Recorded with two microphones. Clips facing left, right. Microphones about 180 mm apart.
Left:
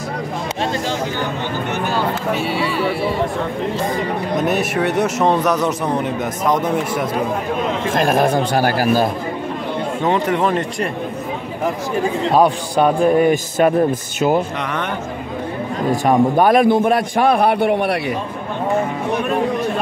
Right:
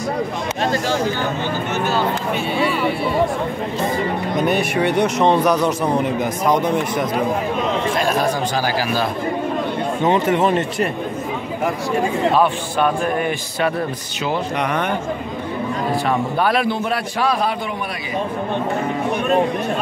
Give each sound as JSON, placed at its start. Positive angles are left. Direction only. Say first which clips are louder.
{"t": 4.4, "sound": "a man's voice", "louder": "right 1 dB", "side_deg": 0}
{"t": 7.9, "sound": "a man's voice", "louder": "left 3 dB", "side_deg": 50}
{"t": 10.2, "sound": "speech", "louder": "right 1 dB", "side_deg": -25}
{"t": 12.4, "sound": "a man's voice", "louder": "left 3 dB", "side_deg": 40}
{"t": 15.9, "sound": "a man's voice", "louder": "left 8 dB", "side_deg": 45}